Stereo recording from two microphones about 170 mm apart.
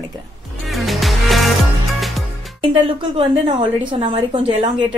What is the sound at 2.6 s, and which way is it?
A woman's voice, 35° right (ahead or behind).